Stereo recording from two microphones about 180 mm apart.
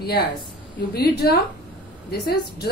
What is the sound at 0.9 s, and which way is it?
A woman's voice, 60° left (ahead or behind).